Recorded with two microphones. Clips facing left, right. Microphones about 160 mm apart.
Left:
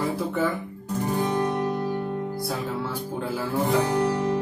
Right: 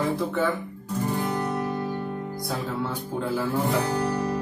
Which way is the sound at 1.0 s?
15° left (ahead or behind).